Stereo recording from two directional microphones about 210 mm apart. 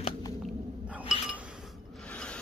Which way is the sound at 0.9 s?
5° right (ahead or behind).